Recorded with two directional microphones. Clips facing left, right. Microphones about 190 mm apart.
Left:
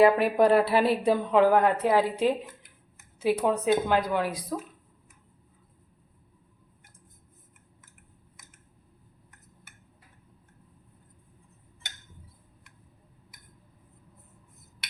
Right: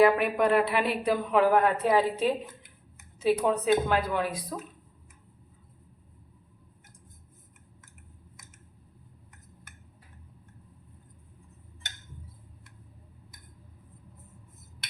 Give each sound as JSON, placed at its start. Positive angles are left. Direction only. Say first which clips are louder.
{"t": 0.0, "sound": "a woman's voice", "louder": "left 2 dB", "side_deg": 35}